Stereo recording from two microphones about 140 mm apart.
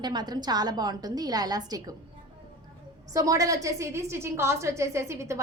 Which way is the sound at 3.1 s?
25° right (ahead or behind).